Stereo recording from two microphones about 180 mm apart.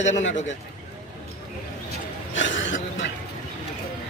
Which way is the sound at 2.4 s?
90° left.